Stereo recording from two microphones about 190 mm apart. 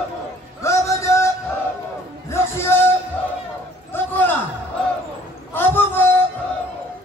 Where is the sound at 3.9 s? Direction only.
10° left (ahead or behind).